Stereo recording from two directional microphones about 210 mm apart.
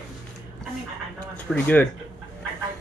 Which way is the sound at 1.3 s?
5° left (ahead or behind).